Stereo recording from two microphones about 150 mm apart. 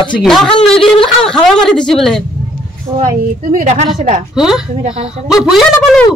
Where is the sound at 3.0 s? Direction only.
55° right (ahead or behind).